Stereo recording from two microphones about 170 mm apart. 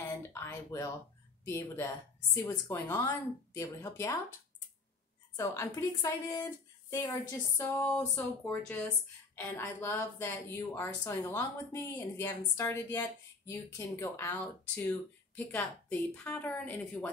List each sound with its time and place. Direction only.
0.3 s a sound: 15° left (ahead or behind)
1.4 s a woman's voice: 15° left (ahead or behind)
5.3 s a woman's voice: 15° left (ahead or behind)